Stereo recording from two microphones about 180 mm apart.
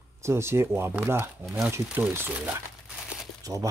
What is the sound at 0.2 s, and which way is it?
Speech, 15° right (ahead or behind).